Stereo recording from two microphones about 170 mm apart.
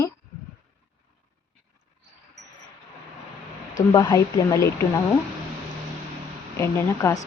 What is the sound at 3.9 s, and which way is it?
Speech, 20° left (ahead or behind).